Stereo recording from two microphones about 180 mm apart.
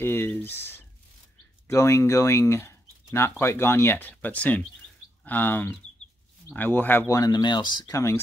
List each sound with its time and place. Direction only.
0.0 s speech: 10° left (ahead or behind)